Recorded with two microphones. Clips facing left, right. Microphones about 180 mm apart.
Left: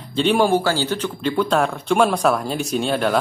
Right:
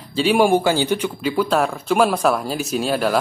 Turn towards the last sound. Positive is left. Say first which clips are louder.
# even
turn(degrees=-5)  # may be behind; listen again after turning